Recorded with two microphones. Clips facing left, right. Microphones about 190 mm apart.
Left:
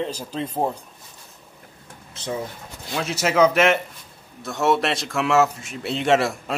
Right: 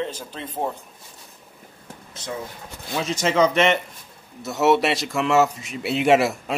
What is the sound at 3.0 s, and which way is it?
A man's voice, 5° left (ahead or behind).